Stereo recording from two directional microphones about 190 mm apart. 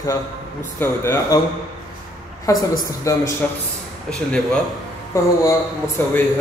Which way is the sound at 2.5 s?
15° left (ahead or behind).